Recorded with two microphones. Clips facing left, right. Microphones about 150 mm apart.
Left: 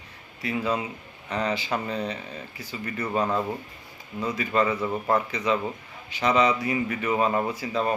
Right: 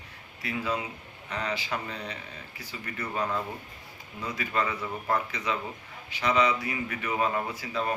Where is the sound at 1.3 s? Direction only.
30° left (ahead or behind).